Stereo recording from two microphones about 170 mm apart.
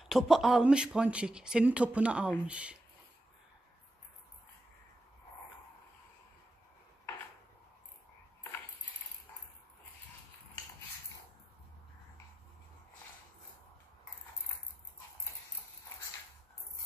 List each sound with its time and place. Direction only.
0.0 s speech: centre (ahead or behind)